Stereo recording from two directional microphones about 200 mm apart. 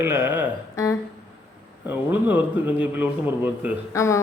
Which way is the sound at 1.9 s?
10° right (ahead or behind).